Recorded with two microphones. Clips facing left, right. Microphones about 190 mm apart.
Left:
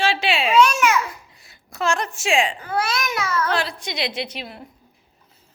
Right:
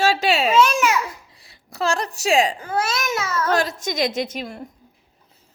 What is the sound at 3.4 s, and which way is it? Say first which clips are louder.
A woman's voice: right 3 dB; 45° right (ahead or behind).